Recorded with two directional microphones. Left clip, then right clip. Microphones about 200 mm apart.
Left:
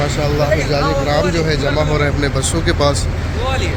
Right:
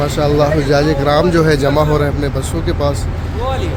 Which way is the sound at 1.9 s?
20° right (ahead or behind).